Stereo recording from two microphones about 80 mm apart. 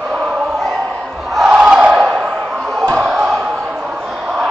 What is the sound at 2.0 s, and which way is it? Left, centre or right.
Slam, centre.